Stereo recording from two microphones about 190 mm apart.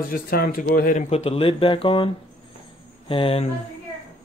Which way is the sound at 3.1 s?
30° left (ahead or behind).